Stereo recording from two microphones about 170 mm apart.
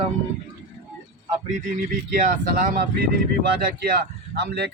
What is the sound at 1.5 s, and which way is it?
Speech, 55° right (ahead or behind).